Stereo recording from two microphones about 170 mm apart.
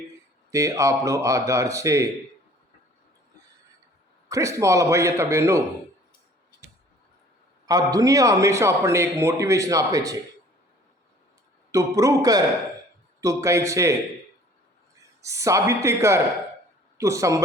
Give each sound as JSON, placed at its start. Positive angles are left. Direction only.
{"t": 0.5, "sound": "a man's voice", "side_deg": -20}
{"t": 4.3, "sound": "a man's voice", "side_deg": -20}
{"t": 7.7, "sound": "a man's voice", "side_deg": -20}
{"t": 11.7, "sound": "a man's voice", "side_deg": -20}
{"t": 15.2, "sound": "a man's voice", "side_deg": -15}